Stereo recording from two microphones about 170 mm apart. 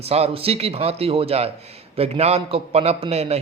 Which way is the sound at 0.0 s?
35° right (ahead or behind).